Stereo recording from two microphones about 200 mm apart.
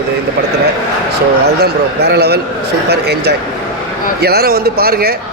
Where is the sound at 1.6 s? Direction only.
55° right (ahead or behind).